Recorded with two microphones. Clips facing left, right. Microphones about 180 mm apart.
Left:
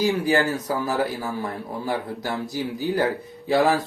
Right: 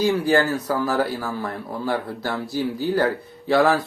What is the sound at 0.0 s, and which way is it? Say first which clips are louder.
Speech: right 2 dB; 20° left (ahead or behind).